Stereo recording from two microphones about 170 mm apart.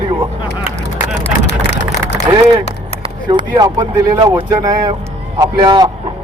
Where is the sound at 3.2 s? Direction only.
25° right (ahead or behind).